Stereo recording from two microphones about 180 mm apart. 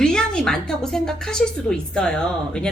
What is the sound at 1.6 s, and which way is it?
Speech, 5° left (ahead or behind).